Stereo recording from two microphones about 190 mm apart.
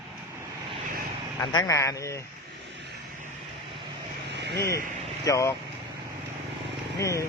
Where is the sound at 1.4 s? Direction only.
20° left (ahead or behind).